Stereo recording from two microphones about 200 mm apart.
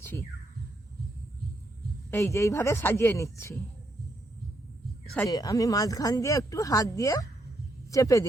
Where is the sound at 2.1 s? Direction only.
15° left (ahead or behind).